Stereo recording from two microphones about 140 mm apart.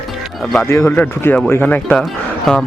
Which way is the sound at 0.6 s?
20° left (ahead or behind).